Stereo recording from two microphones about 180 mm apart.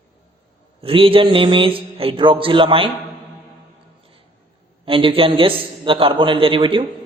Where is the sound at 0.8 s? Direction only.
30° right (ahead or behind).